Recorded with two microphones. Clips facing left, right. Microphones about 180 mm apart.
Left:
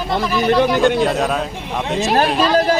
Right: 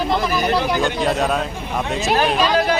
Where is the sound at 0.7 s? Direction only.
Centre (ahead or behind).